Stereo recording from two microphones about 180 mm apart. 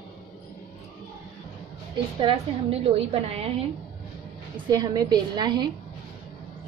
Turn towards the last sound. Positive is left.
turn(degrees=-25)  # may be behind; listen again after turning